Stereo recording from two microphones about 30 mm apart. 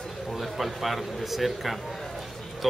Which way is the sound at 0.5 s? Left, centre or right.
Centre.